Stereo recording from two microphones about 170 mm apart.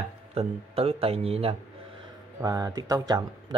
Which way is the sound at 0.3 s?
35° right (ahead or behind).